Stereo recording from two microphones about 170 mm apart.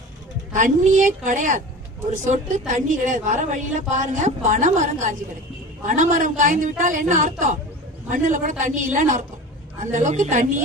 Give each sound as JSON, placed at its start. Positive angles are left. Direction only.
{"t": 0.5, "sound": "a woman's voice", "side_deg": -50}